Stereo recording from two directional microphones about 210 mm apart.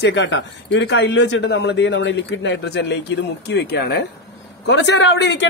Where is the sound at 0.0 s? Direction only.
60° left (ahead or behind).